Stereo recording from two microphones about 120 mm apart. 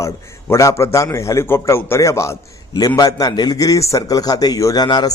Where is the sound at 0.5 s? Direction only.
25° left (ahead or behind).